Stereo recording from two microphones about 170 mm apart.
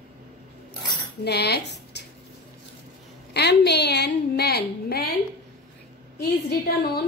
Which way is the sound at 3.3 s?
80° left.